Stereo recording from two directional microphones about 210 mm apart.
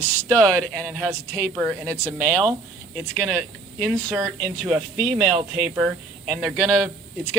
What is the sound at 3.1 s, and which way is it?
Speech, 10° right (ahead or behind).